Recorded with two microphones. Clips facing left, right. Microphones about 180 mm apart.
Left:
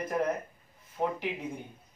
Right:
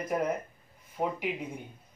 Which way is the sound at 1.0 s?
20° right (ahead or behind).